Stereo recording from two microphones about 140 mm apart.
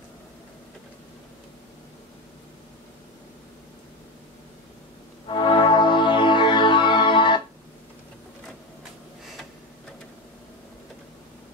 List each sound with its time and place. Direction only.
5.3 s music: 35° left (ahead or behind)